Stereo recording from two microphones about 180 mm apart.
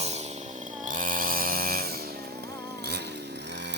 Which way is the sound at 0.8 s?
50° right (ahead or behind).